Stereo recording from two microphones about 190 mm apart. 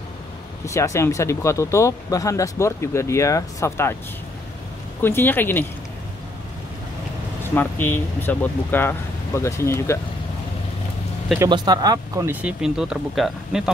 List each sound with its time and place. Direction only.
0.7 s speech: 15° left (ahead or behind)
5.0 s speech: 10° left (ahead or behind)
7.5 s speech: 10° left (ahead or behind)
11.3 s speech: 20° right (ahead or behind); by 13.7 s centre (ahead or behind)